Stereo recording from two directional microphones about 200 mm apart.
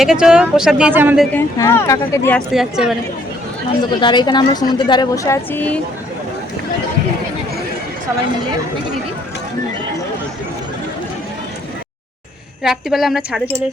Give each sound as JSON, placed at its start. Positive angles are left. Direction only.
{"t": 0.0, "sound": "speech", "side_deg": -5}
{"t": 1.3, "sound": "speech", "side_deg": 15}
{"t": 2.5, "sound": "speech", "side_deg": 0}
{"t": 4.0, "sound": "a woman's voice", "side_deg": 20}
{"t": 12.6, "sound": "speech", "side_deg": 0}